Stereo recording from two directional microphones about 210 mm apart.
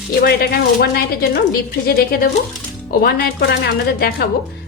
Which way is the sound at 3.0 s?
50° left (ahead or behind).